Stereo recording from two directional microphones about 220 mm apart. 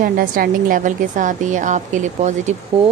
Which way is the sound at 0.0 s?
40° right (ahead or behind).